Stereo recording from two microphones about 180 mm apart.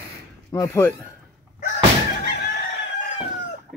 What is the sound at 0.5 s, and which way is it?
Speech, 20° left (ahead or behind).